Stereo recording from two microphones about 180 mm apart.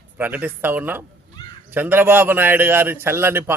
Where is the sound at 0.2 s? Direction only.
10° right (ahead or behind).